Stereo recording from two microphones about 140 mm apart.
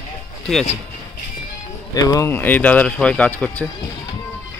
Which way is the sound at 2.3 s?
10° left (ahead or behind).